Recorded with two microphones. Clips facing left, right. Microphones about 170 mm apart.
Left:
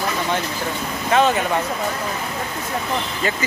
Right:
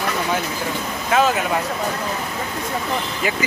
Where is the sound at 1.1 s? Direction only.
5° right (ahead or behind).